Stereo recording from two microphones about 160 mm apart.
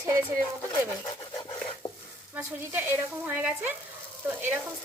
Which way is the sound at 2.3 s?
10° right (ahead or behind).